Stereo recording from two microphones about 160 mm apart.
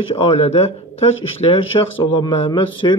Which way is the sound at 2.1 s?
30° left (ahead or behind).